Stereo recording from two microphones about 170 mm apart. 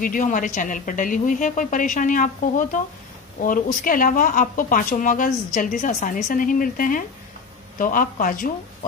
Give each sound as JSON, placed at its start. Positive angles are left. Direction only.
{"t": 0.0, "sound": "speech", "side_deg": 50}